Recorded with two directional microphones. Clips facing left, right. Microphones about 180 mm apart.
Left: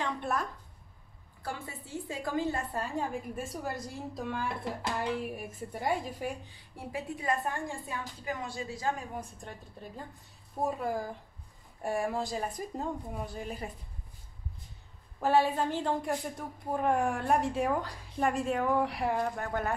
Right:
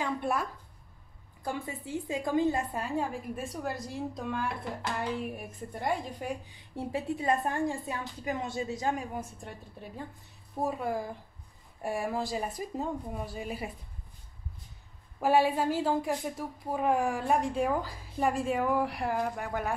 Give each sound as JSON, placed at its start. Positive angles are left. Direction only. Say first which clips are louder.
{"t": 0.0, "sound": "a woman's voice", "louder": "right 2 dB", "side_deg": -10}
{"t": 3.4, "sound": "a woman's voice", "louder": "right 2 dB", "side_deg": 0}
{"t": 6.9, "sound": "a woman's voice", "louder": "right 3 dB", "side_deg": -25}
{"t": 10.6, "sound": "a woman's voice", "louder": "even", "side_deg": 0}
{"t": 15.1, "sound": "a woman's voice", "louder": "right 1 dB", "side_deg": -10}